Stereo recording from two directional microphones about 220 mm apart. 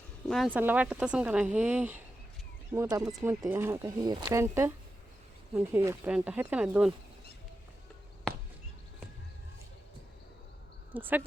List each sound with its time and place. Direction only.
0.3 s speech: centre (ahead or behind)
10.9 s speech: 10° right (ahead or behind)